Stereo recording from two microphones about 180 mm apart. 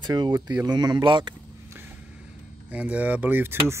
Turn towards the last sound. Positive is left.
turn(degrees=-10)  # may be behind; listen again after turning